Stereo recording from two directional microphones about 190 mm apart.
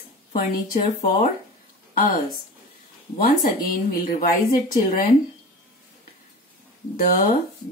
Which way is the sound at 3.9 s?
50° left (ahead or behind).